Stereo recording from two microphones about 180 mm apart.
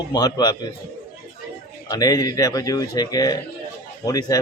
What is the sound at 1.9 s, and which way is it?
Speech, 20° left (ahead or behind).